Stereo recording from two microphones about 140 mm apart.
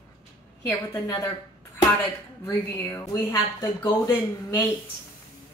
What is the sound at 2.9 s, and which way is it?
Speech, 15° left (ahead or behind).